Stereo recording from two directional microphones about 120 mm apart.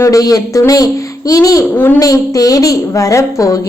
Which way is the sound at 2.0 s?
30° left (ahead or behind).